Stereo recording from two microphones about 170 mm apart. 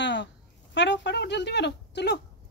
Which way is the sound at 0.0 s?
90° left.